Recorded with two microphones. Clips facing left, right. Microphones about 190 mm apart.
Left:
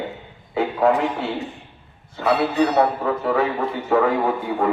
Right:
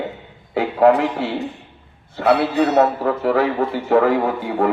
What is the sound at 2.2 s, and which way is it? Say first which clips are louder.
A man's voice: right 2 dB; 60° right (ahead or behind).